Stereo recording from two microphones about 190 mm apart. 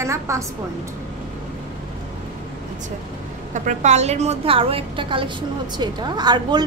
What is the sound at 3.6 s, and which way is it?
A woman's voice, 40° right (ahead or behind).